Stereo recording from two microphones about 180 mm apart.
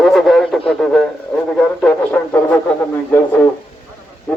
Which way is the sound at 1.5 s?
5° left (ahead or behind).